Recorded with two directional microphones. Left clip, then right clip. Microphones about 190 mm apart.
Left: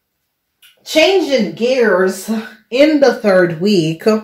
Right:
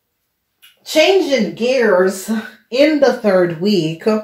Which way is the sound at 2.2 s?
15° left (ahead or behind).